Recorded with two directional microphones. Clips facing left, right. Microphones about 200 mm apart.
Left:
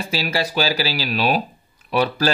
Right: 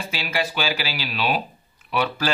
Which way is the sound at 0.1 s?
35° left (ahead or behind).